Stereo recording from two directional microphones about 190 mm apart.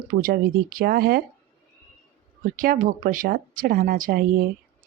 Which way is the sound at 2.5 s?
50° right (ahead or behind).